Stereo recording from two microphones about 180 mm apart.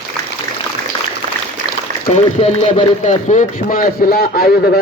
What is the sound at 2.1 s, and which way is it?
Speech, 35° left (ahead or behind).